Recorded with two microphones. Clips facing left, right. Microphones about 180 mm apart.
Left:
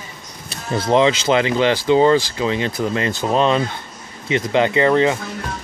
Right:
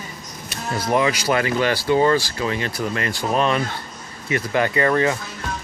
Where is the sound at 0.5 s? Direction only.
25° left (ahead or behind).